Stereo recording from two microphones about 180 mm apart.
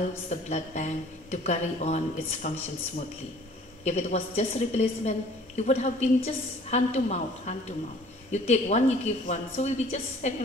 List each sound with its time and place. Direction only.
0.3 s speech: 40° left (ahead or behind)
3.8 s speech: 40° left (ahead or behind)